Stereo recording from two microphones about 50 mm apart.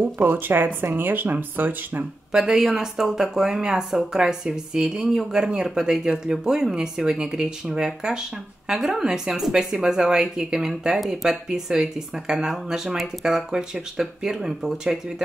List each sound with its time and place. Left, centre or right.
0.0 s speech: right
2.3 s speech: centre